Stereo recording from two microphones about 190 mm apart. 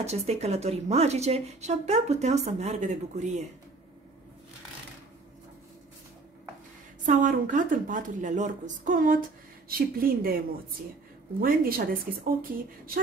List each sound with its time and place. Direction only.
0.0 s a woman's voice: 35° right (ahead or behind)
7.1 s a woman's voice: 45° right (ahead or behind)
11.4 s a woman's voice: 50° right (ahead or behind)